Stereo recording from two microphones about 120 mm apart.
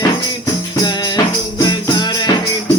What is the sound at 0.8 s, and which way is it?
Music, 35° left (ahead or behind).